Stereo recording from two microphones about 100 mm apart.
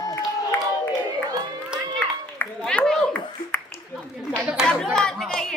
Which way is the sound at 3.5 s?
20° left (ahead or behind).